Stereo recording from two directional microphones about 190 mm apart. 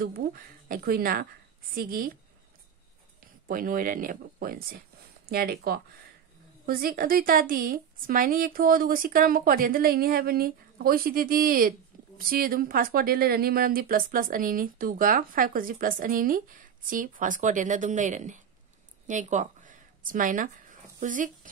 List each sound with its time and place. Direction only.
0.0 s speech: 50° right (ahead or behind)
3.4 s speech: 45° right (ahead or behind)
19.0 s a sound: 40° right (ahead or behind)